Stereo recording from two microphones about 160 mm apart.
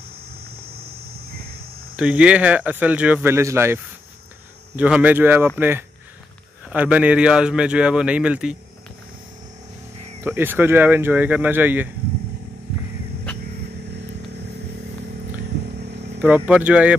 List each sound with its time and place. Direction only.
0.3 s a sound: 75° right (ahead or behind)
2.0 s a man's voice: 5° right (ahead or behind)
10.2 s a man's voice: 15° right (ahead or behind)
16.2 s a man's voice: 10° right (ahead or behind)